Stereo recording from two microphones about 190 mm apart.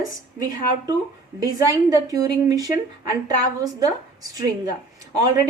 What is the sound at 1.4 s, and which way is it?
A woman's voice, 20° right (ahead or behind).